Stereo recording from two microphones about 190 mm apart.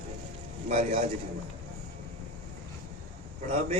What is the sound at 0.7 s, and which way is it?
Speech, 35° right (ahead or behind).